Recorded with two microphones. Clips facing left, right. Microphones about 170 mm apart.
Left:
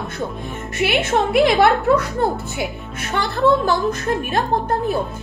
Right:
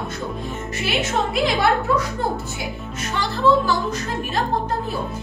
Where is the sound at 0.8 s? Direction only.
60° left (ahead or behind).